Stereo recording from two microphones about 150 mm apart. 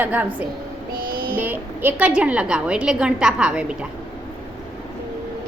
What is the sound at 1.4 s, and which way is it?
A woman's voice, 15° right (ahead or behind).